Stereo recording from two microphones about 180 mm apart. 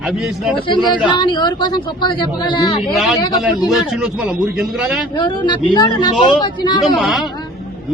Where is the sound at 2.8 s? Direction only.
Centre (ahead or behind).